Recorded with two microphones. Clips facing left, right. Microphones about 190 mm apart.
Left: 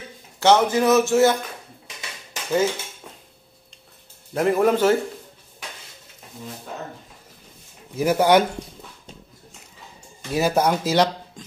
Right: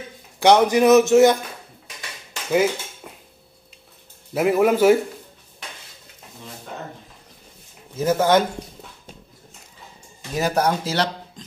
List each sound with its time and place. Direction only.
0.4 s speech: 15° right (ahead or behind)
2.5 s speech: 10° right (ahead or behind)
4.3 s speech: 5° right (ahead or behind)
7.9 s speech: 15° left (ahead or behind)
10.3 s speech: 10° left (ahead or behind)